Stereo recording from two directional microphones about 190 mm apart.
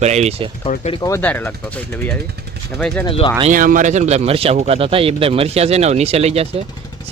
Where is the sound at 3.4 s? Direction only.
45° right (ahead or behind).